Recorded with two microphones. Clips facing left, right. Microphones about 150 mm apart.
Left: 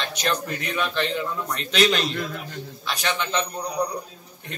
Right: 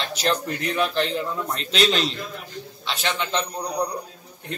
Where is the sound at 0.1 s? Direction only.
30° right (ahead or behind).